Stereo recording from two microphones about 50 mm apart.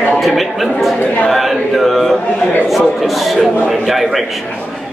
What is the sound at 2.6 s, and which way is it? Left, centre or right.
A man's voice, centre.